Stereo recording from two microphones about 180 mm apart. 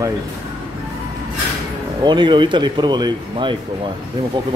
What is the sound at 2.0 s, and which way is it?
Speech, 25° right (ahead or behind).